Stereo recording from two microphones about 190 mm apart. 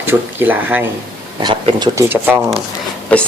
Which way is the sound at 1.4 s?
25° right (ahead or behind).